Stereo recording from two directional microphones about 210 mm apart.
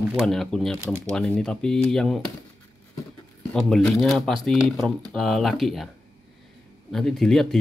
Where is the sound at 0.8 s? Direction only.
15° right (ahead or behind).